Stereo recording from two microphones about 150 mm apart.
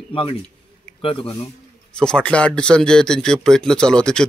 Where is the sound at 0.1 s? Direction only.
35° left (ahead or behind).